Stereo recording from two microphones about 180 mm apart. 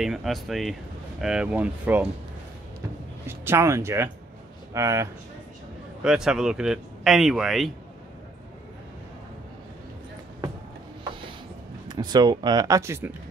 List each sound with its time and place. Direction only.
0.0 s speech: centre (ahead or behind)
3.3 s speech: 15° right (ahead or behind)
6.0 s speech: 5° right (ahead or behind)
11.9 s speech: 20° right (ahead or behind)